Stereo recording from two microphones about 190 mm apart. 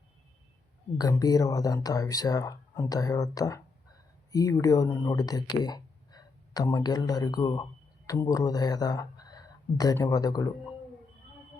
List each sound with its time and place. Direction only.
0.9 s speech: 20° left (ahead or behind)